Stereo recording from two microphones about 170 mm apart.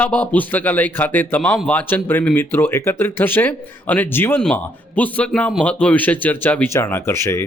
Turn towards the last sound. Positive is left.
turn(degrees=15)  # may be behind; listen again after turning